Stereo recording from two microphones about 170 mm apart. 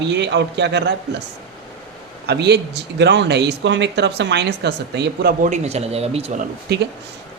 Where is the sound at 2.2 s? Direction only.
75° right (ahead or behind).